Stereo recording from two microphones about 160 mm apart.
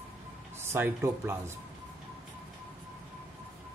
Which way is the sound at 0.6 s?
15° right (ahead or behind).